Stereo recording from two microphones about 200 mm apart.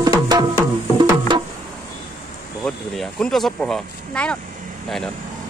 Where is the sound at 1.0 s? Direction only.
20° right (ahead or behind).